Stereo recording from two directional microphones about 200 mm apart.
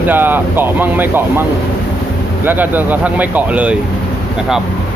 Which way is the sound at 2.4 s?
10° right (ahead or behind).